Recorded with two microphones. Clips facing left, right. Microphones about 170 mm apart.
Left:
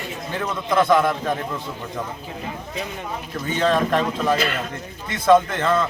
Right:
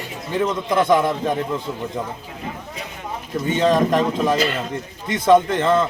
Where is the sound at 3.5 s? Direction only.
20° right (ahead or behind).